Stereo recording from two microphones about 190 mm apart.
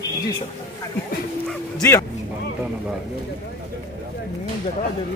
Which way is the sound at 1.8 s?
15° left (ahead or behind).